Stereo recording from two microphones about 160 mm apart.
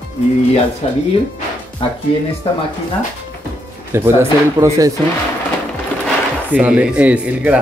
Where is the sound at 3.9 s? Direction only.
15° right (ahead or behind).